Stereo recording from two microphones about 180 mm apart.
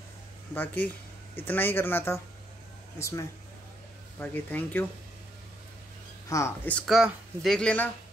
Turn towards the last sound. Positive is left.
turn(degrees=5)  # may be behind; listen again after turning